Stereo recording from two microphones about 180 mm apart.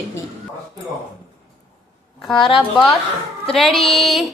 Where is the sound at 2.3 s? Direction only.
30° left (ahead or behind).